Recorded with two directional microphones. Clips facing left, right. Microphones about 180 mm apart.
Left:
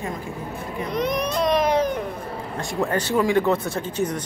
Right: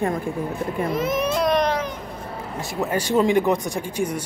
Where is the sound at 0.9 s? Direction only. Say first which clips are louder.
Left 1 dB; 5° right (ahead or behind).